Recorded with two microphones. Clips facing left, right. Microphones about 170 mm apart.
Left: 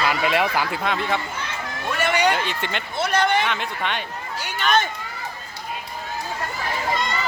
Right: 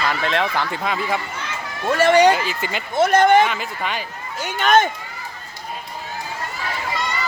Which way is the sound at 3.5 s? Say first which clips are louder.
Even; 5° right (ahead or behind).